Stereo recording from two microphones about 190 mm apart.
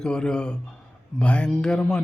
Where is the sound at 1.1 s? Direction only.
5° left (ahead or behind).